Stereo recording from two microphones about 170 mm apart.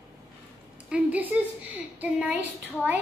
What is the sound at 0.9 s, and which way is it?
Child singing, 10° right (ahead or behind).